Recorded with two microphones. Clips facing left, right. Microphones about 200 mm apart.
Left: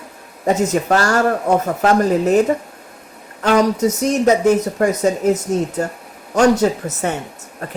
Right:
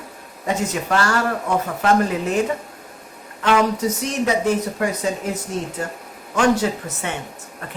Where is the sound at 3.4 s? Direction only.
40° left (ahead or behind).